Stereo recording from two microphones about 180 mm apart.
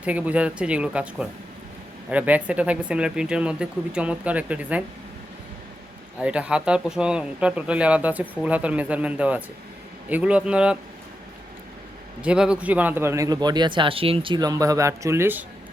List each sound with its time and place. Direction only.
0.0 s speech: 5° right (ahead or behind)
6.1 s a man's voice: 5° right (ahead or behind)
12.2 s speech: 5° right (ahead or behind)